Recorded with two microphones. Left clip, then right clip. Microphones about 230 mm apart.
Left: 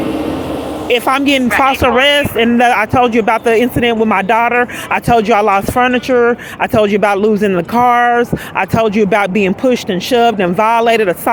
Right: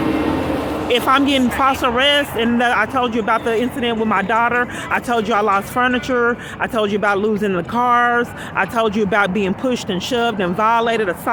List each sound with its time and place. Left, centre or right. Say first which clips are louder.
0.9 s speech: left 3 dB; left
1.5 s speech: left 5 dB; left
1.8 s speech: left 5 dB; left